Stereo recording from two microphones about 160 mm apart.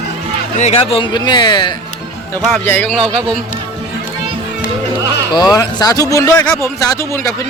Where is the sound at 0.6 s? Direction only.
40° left (ahead or behind).